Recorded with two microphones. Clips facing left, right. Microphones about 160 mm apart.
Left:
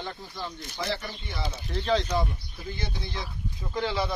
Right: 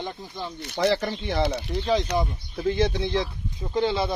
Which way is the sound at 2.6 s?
80° right.